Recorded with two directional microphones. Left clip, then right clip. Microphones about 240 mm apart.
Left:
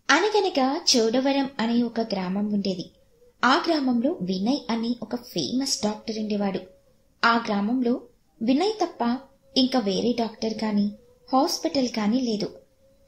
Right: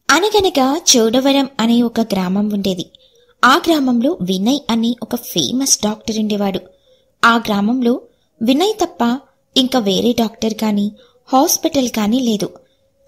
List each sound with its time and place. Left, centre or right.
0.0 s a woman's voice: right